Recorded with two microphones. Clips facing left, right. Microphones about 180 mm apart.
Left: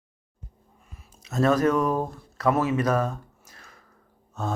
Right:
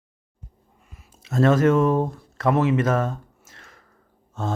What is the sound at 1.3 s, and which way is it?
Speech, 25° right (ahead or behind).